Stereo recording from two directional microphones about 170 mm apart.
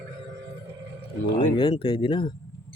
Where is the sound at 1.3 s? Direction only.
30° left (ahead or behind).